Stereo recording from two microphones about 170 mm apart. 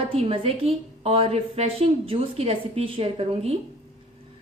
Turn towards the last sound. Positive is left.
turn(degrees=-35)  # may be behind; listen again after turning